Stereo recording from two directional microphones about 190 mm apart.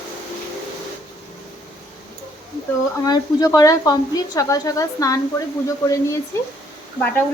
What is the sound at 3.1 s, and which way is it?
A woman's voice, 20° left (ahead or behind).